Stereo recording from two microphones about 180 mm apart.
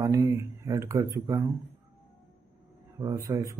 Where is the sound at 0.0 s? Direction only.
20° right (ahead or behind).